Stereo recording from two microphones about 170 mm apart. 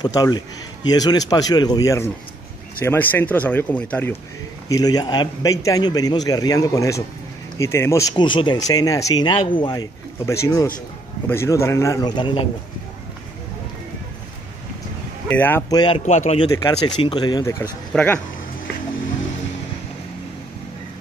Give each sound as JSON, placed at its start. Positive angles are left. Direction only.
{"t": 0.0, "sound": "speech", "side_deg": 25}
{"t": 4.6, "sound": "speech", "side_deg": 20}
{"t": 8.1, "sound": "speech", "side_deg": 30}
{"t": 15.2, "sound": "speech", "side_deg": 10}
{"t": 15.7, "sound": "speech", "side_deg": 25}
{"t": 16.1, "sound": "speech", "side_deg": 40}
{"t": 16.5, "sound": "speech", "side_deg": 25}
{"t": 17.9, "sound": "speech", "side_deg": 10}